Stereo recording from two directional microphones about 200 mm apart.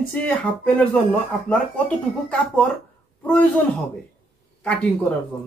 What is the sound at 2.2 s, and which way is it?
Speech, 5° left (ahead or behind).